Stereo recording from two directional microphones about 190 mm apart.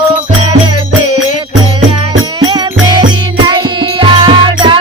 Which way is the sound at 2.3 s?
25° right (ahead or behind).